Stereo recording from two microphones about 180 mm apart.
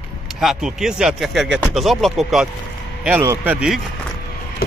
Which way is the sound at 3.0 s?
10° right (ahead or behind).